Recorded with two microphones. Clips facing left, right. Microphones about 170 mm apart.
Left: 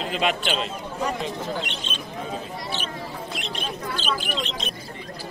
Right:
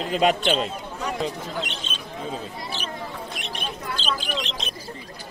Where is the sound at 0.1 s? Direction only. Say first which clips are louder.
Right 5 dB; 40° right (ahead or behind).